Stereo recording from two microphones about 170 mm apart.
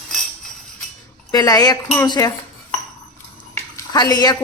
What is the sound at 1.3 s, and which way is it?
Speech, 20° left (ahead or behind).